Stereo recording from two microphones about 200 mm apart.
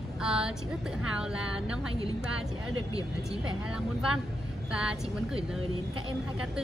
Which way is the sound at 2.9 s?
30° right (ahead or behind).